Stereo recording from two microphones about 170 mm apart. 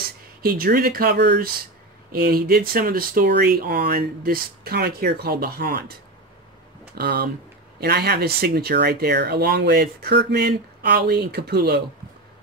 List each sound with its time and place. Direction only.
0.0 s speech: 60° right (ahead or behind)
7.0 s speech: 65° right (ahead or behind)